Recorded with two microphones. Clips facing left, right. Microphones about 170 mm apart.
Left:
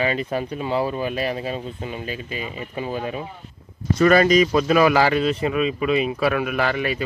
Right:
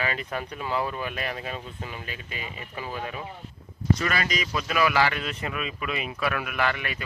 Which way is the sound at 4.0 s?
45° left (ahead or behind).